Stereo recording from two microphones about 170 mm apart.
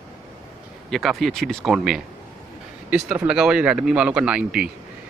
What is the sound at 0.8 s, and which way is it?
Speech, centre (ahead or behind).